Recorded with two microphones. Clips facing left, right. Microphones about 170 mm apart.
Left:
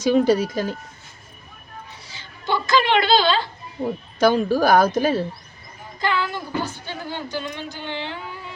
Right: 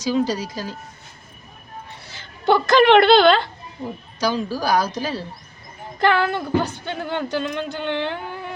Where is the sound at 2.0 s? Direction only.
60° right (ahead or behind).